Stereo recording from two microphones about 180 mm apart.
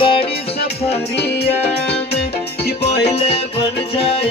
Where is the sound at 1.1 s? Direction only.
65° left (ahead or behind).